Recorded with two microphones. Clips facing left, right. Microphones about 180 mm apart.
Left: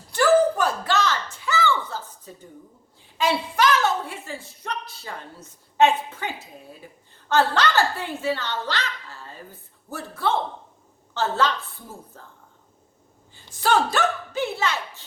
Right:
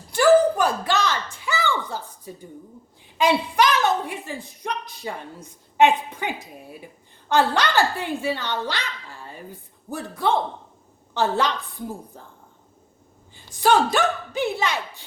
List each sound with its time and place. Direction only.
0.1 s a sound: 15° right (ahead or behind)
3.2 s a woman's voice: 15° right (ahead or behind)
13.3 s a woman's voice: 15° right (ahead or behind)